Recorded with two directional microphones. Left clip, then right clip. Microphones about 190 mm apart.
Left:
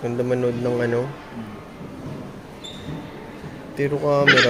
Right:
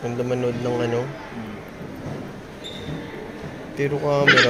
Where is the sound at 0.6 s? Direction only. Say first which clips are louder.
Left 1 dB; 40° left (ahead or behind).